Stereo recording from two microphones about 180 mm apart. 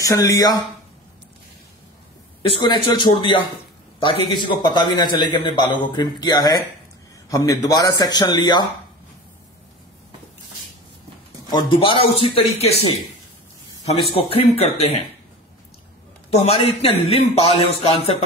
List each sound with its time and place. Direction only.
0.0 s a man's voice: 20° left (ahead or behind)
2.5 s a man's voice: 25° left (ahead or behind)
11.5 s a man's voice: 30° left (ahead or behind)
13.9 s a man's voice: 30° left (ahead or behind)
16.3 s a man's voice: 35° left (ahead or behind)